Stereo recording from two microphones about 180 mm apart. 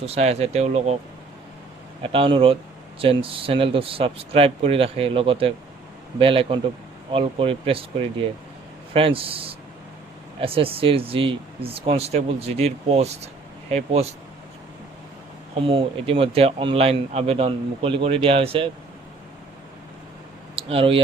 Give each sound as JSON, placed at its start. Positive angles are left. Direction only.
{"t": 0.0, "sound": "speech", "side_deg": -35}
{"t": 2.0, "sound": "speech", "side_deg": -30}
{"t": 15.6, "sound": "speech", "side_deg": -30}
{"t": 20.6, "sound": "speech", "side_deg": -30}